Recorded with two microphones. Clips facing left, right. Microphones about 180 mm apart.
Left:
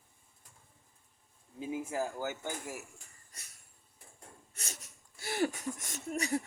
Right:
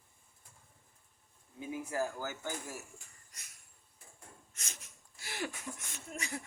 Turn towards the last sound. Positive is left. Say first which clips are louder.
# left 9 dB
turn(degrees=40)  # may be behind; listen again after turning